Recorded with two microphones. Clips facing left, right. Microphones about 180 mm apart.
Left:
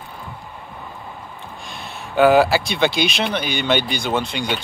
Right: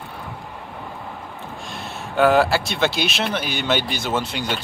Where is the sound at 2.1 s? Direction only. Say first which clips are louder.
Left 3 dB; centre (ahead or behind).